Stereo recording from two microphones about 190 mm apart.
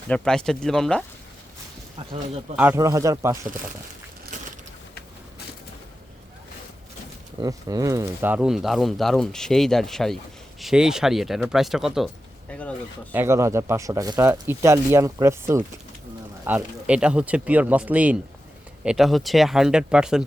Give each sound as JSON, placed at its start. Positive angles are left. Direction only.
{"t": 0.1, "sound": "speech", "side_deg": 5}
{"t": 2.6, "sound": "speech", "side_deg": -10}
{"t": 7.4, "sound": "speech", "side_deg": -20}
{"t": 13.1, "sound": "speech", "side_deg": -15}